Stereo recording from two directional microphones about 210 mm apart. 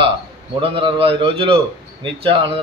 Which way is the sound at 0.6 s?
25° right (ahead or behind).